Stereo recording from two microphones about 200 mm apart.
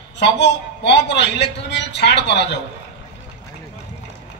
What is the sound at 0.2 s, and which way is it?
A man's voice, 60° left (ahead or behind).